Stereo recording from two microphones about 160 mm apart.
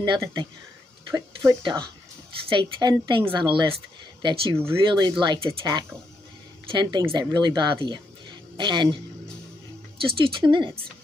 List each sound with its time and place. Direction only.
0.0 s a woman's voice: 25° right (ahead or behind)
10.0 s speech: 35° right (ahead or behind)